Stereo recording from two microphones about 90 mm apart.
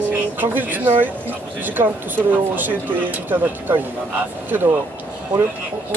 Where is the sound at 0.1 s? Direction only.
20° right (ahead or behind).